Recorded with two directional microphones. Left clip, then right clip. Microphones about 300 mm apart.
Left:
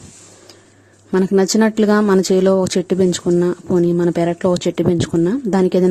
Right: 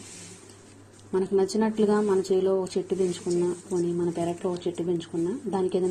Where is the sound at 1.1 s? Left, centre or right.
Left.